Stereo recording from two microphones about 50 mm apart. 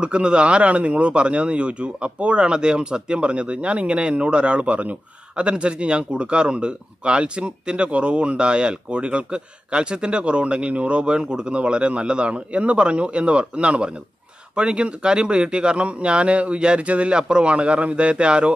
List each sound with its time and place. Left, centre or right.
0.0 s speech: right